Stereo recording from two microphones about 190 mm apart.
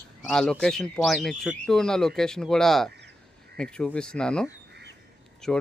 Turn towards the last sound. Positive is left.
turn(degrees=5)  # may be behind; listen again after turning